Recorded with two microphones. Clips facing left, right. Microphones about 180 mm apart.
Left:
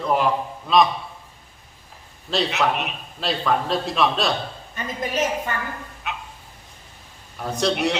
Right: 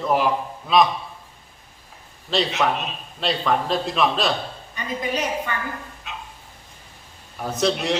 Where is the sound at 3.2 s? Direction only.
Centre (ahead or behind).